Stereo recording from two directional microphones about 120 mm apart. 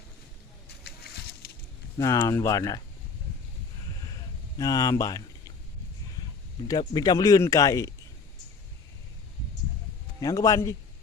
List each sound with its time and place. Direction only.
2.0 s speech: 25° left (ahead or behind)
4.5 s speech: 30° left (ahead or behind)
6.7 s speech: 35° left (ahead or behind)
10.2 s speech: 30° left (ahead or behind)